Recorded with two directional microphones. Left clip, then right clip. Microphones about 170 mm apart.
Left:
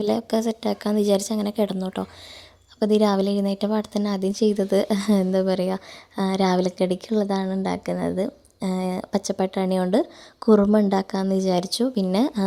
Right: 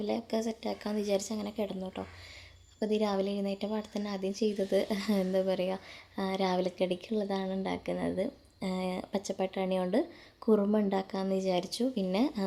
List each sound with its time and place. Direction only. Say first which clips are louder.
0.0 s a woman's voice: left 10 dB; 45° left (ahead or behind)